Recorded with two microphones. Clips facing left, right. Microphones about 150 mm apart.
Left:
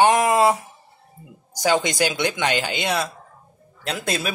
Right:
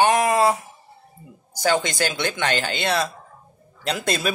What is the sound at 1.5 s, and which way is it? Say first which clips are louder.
Speech: left 1 dB; 20° left (ahead or behind).